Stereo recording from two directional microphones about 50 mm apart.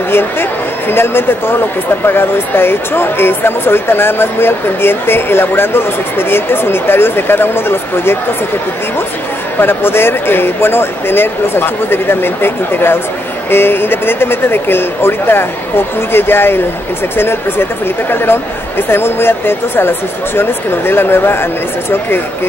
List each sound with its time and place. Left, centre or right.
0.1 s speech: left
9.6 s speech: left